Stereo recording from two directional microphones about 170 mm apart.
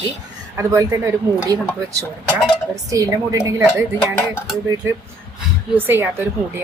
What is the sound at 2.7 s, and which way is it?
Speech, 20° right (ahead or behind).